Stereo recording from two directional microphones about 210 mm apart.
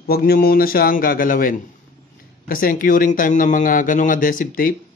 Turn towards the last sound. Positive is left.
turn(degrees=40)  # may be behind; listen again after turning